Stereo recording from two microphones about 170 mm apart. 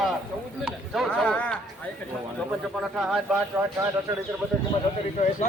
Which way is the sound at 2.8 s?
Centre (ahead or behind).